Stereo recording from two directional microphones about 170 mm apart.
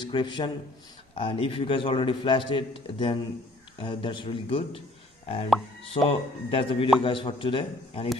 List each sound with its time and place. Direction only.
0.0 s a man's voice: 25° left (ahead or behind)
5.9 s a man's voice: 35° left (ahead or behind)